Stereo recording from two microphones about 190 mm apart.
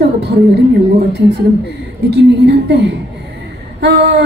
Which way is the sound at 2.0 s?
60° right (ahead or behind).